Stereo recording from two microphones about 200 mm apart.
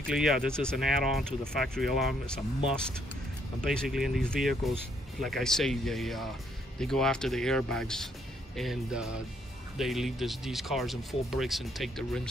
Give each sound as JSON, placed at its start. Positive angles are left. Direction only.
{"t": 0.0, "sound": "speech", "side_deg": 0}